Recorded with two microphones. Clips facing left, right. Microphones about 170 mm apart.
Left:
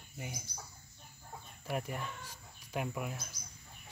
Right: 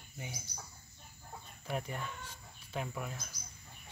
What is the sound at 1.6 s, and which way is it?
Speech, 5° left (ahead or behind).